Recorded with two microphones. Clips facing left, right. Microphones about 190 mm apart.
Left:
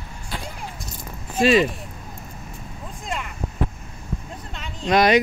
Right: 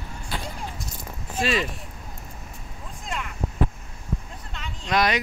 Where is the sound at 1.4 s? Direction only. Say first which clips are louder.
Left 8 dB; 15° left (ahead or behind).